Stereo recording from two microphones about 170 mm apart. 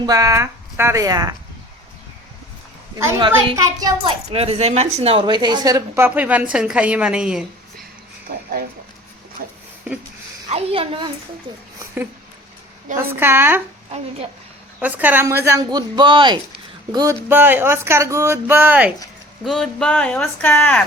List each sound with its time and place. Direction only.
0.0 s speech: 20° right (ahead or behind)
3.2 s speech: 25° right (ahead or behind)
4.0 s speech: 35° right (ahead or behind); by 7.4 s 5° right (ahead or behind)
8.3 s speech: 60° right (ahead or behind)
10.5 s a woman's voice: 35° right (ahead or behind)
13.1 s speech: 15° right (ahead or behind)
13.9 s a woman's voice: 40° right (ahead or behind)
14.8 s speech: 10° right (ahead or behind)
17.2 s speech: 10° right (ahead or behind)
19.5 s speech: 5° left (ahead or behind)